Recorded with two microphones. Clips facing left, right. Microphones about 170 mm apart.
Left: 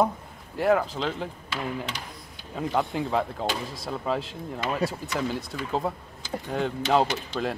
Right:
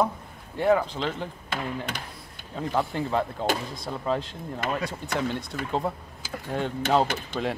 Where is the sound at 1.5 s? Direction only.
50° right (ahead or behind).